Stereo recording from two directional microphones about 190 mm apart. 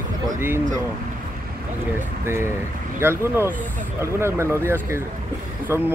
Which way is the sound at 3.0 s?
15° right (ahead or behind).